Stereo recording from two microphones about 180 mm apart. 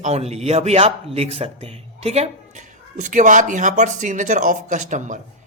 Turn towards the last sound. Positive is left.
turn(degrees=-45)  # may be behind; listen again after turning